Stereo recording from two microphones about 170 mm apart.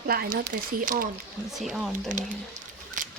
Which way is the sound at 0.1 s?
65° right (ahead or behind).